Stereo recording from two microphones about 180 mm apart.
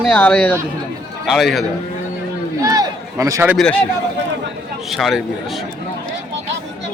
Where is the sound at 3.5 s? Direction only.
5° left (ahead or behind).